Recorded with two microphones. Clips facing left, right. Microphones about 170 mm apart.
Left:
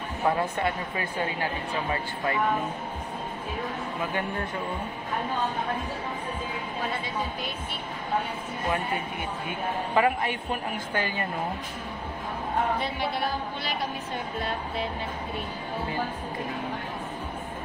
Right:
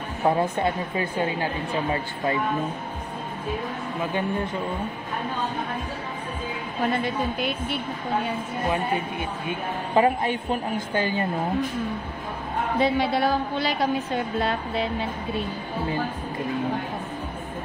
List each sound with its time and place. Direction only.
0.2 s a woman's voice: 25° right (ahead or behind)
7.0 s a woman's voice: 70° right (ahead or behind)
9.5 s a woman's voice: 30° right (ahead or behind)
12.8 s a woman's voice: 90° right